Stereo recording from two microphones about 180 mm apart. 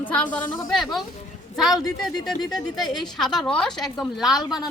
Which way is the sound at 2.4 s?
20° left (ahead or behind).